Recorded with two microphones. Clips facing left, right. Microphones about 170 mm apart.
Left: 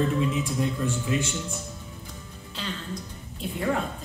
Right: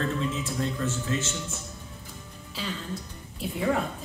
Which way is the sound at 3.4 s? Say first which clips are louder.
Even; 5° right (ahead or behind).